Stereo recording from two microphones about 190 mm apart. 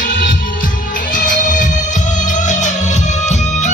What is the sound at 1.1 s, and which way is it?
Music, 45° left (ahead or behind).